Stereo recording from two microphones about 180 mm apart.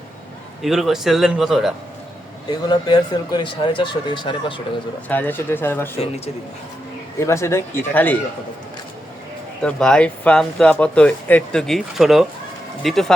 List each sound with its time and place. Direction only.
0.6 s speech: centre (ahead or behind)
2.5 s speech: 25° left (ahead or behind)
5.0 s speech: 10° left (ahead or behind)
6.0 s speech: 35° left (ahead or behind)
7.2 s speech: 15° left (ahead or behind)
9.6 s speech: 5° left (ahead or behind)